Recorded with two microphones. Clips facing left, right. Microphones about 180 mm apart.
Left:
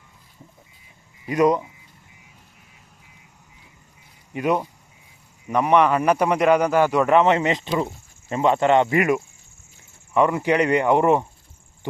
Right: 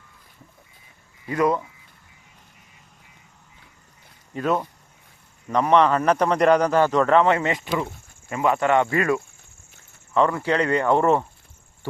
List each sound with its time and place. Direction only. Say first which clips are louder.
1.2 s speech: left 3 dB; 20° left (ahead or behind)
4.4 s a man's voice: left 1 dB; 15° left (ahead or behind)